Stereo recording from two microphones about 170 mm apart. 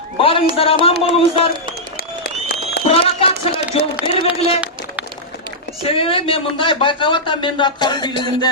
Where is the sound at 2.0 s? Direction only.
60° left (ahead or behind).